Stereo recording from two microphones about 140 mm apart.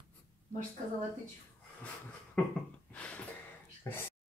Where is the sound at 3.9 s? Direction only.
20° left (ahead or behind).